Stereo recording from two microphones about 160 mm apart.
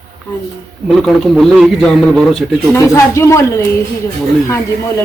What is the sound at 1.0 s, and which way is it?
A man's voice, centre (ahead or behind).